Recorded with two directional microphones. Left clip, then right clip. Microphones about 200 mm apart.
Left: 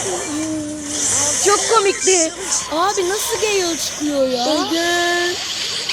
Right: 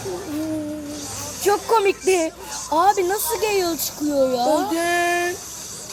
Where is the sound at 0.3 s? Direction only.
30° left (ahead or behind).